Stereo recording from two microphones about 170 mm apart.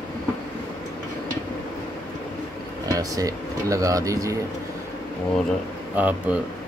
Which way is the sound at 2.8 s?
20° right (ahead or behind).